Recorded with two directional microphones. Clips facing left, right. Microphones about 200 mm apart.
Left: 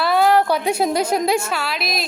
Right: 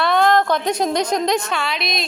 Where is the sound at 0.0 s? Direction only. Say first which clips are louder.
Even; 5° left (ahead or behind).